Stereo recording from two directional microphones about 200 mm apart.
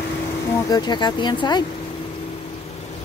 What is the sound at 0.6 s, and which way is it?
Speech, 20° left (ahead or behind).